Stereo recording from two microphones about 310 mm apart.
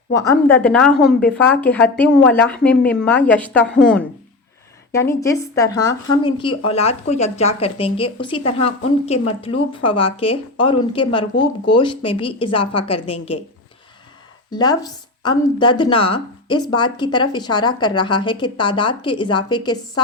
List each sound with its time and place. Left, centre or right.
0.1 s speech: centre
4.9 s speech: centre
14.5 s speech: centre